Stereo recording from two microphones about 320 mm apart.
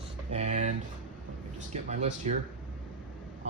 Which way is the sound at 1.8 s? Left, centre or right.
Right.